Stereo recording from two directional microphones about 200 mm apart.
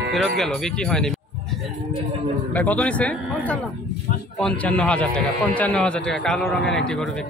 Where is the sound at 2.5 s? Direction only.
10° left (ahead or behind).